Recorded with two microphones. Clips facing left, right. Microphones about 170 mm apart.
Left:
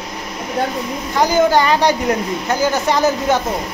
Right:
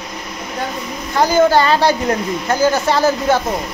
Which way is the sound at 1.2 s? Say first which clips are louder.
Right 1 dB; 15° left (ahead or behind).